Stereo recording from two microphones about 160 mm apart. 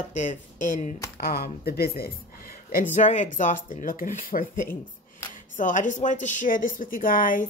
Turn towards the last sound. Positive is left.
turn(degrees=60)  # may be behind; listen again after turning